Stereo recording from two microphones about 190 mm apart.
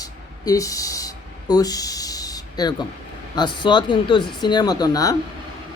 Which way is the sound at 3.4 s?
25° left (ahead or behind).